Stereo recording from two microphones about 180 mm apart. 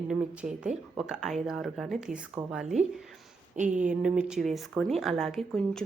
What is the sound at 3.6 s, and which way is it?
Speech, 45° right (ahead or behind).